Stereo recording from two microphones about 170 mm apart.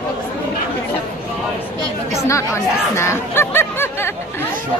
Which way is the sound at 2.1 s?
15° left (ahead or behind).